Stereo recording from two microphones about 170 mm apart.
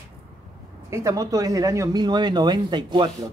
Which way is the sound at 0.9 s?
20° right (ahead or behind).